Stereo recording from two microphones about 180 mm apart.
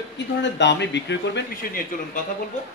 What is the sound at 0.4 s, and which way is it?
Speech, 75° left (ahead or behind).